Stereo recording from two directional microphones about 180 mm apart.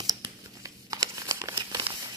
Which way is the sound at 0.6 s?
20° right (ahead or behind).